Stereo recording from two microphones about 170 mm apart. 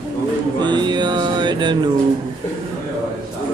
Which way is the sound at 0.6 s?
25° right (ahead or behind).